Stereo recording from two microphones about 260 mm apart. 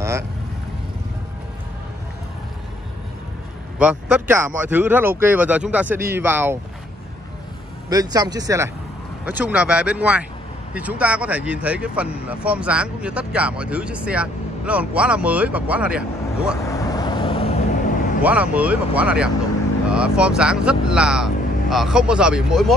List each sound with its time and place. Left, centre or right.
3.7 s speech: centre
7.9 s speech: centre
16.6 s vehicle: centre
18.2 s speech: centre